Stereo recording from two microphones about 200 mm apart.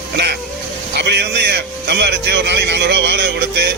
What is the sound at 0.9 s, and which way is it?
A man's voice, 55° right (ahead or behind).